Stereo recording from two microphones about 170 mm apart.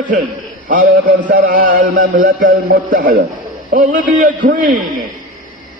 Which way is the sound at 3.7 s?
50° right (ahead or behind).